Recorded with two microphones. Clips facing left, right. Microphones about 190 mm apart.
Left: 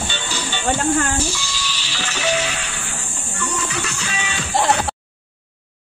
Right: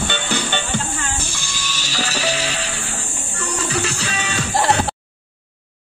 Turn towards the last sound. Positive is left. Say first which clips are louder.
# right 3 dB
turn(degrees=-35)  # may be behind; listen again after turning